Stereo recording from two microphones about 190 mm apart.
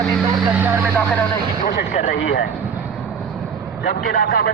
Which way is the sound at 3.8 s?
60° left (ahead or behind).